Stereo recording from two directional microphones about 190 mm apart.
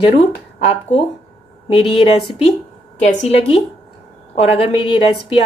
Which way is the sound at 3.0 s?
35° left (ahead or behind).